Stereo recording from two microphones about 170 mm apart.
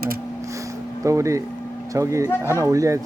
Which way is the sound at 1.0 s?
20° right (ahead or behind).